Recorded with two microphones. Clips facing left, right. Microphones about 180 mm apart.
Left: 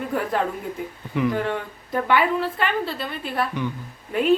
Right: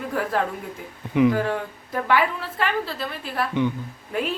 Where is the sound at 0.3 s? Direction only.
Centre (ahead or behind).